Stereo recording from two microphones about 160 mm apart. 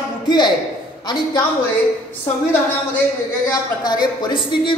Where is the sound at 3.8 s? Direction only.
25° left (ahead or behind).